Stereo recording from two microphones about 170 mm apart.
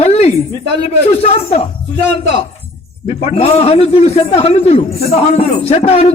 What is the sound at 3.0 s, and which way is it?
Speech, 35° left (ahead or behind).